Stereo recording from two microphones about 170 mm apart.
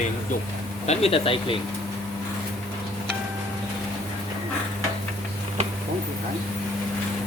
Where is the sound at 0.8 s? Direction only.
35° left (ahead or behind).